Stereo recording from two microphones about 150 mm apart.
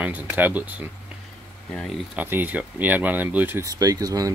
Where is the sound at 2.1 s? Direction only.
10° right (ahead or behind).